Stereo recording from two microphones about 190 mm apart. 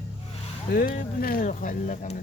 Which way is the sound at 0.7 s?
50° left (ahead or behind).